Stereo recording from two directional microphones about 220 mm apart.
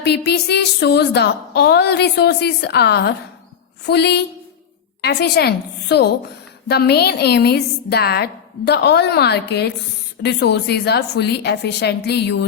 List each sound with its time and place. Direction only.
0.0 s a woman's voice: 50° left (ahead or behind)